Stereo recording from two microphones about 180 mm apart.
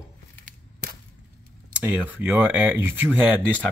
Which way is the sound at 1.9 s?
10° right (ahead or behind).